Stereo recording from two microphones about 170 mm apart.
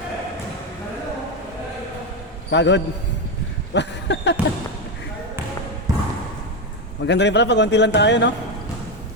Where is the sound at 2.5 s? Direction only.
90° left.